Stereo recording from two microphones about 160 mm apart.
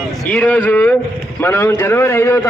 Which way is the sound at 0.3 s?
10° left (ahead or behind).